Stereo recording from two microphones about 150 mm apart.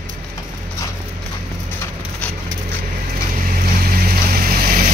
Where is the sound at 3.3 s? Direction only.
70° right (ahead or behind).